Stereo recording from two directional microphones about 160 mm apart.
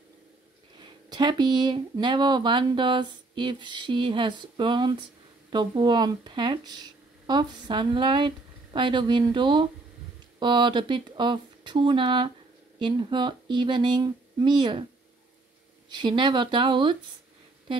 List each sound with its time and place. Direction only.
0.7 s speech: 25° right (ahead or behind)
15.9 s speech: 30° right (ahead or behind)